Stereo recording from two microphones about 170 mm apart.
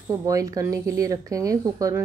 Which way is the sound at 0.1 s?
20° right (ahead or behind).